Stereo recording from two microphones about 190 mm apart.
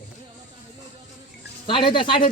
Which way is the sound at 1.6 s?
25° left (ahead or behind).